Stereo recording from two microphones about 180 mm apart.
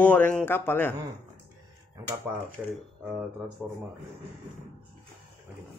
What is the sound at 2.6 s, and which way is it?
Speech, 10° right (ahead or behind).